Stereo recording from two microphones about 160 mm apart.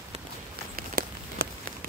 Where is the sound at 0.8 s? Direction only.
65° right (ahead or behind).